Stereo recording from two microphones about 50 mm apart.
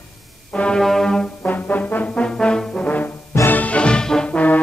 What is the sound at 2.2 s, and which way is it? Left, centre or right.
Trombone, centre.